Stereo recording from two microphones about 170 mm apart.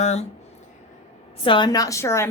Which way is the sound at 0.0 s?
40° left (ahead or behind).